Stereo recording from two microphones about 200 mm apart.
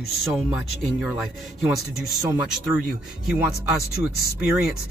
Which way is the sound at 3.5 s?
50° left (ahead or behind).